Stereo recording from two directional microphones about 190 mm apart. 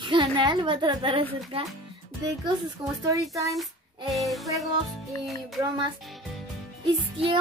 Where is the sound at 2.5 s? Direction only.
25° right (ahead or behind).